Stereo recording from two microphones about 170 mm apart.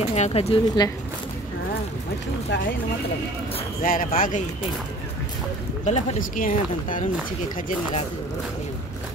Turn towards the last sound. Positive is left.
turn(degrees=50)  # may be behind; listen again after turning